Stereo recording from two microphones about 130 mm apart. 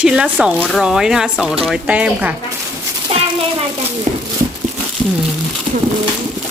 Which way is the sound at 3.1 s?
50° right (ahead or behind).